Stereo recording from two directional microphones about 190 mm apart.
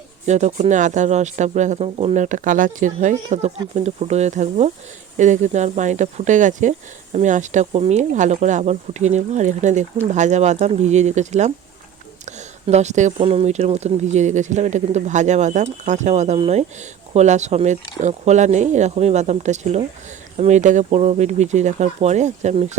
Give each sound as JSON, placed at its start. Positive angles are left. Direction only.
{"t": 0.3, "sound": "speech", "side_deg": -40}